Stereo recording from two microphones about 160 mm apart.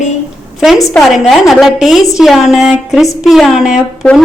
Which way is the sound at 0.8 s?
Centre (ahead or behind).